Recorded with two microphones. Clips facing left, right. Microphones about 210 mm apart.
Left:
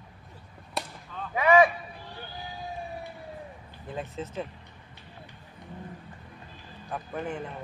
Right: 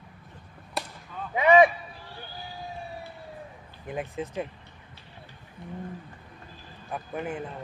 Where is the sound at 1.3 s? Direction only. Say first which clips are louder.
Right 2 dB; 20° right (ahead or behind).